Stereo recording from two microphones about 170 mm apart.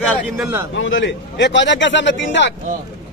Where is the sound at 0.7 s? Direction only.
90° left.